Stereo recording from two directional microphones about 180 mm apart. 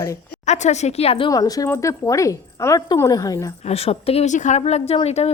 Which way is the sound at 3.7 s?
35° left (ahead or behind).